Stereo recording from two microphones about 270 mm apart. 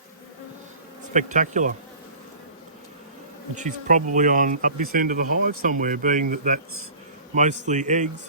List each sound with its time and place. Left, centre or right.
1.1 s speech: right
3.5 s speech: right